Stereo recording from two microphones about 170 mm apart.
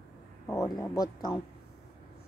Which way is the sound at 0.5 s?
20° left (ahead or behind).